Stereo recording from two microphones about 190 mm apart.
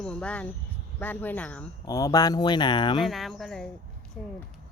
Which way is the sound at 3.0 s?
Centre (ahead or behind).